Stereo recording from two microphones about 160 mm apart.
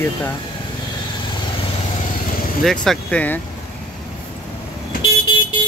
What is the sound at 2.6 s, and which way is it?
Speech, 5° left (ahead or behind).